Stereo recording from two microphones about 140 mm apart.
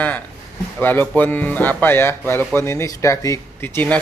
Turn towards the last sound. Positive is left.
turn(degrees=10)  # may be behind; listen again after turning